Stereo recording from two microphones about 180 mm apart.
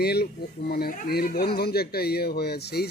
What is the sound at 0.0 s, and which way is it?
Speech, 60° left (ahead or behind).